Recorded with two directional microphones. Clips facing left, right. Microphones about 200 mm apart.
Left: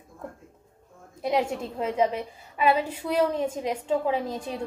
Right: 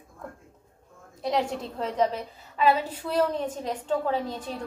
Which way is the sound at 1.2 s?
5° left (ahead or behind).